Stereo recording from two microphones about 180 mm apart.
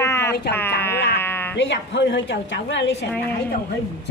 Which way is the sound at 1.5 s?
90° left.